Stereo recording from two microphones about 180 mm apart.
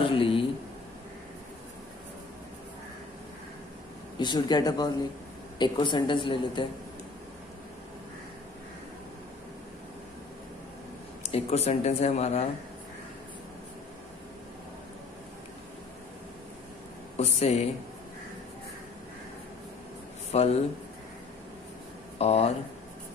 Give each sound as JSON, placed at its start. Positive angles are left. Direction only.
{"t": 0.0, "sound": "a sound", "side_deg": 30}
{"t": 4.2, "sound": "a woman's voice", "side_deg": 25}
{"t": 11.2, "sound": "speech", "side_deg": 35}
{"t": 17.2, "sound": "speech", "side_deg": 35}
{"t": 20.2, "sound": "a sound", "side_deg": 35}
{"t": 22.2, "sound": "speech", "side_deg": 35}